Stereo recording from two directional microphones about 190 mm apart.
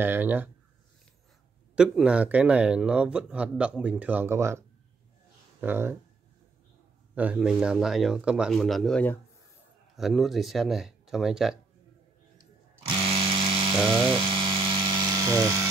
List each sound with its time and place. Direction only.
0.0 s speech: 10° right (ahead or behind)
1.8 s speech: 5° right (ahead or behind)
7.2 s speech: 5° right (ahead or behind)
13.3 s electric toothbrush: 30° right (ahead or behind)
13.9 s speech: 5° left (ahead or behind)
14.2 s electric toothbrush: 25° right (ahead or behind)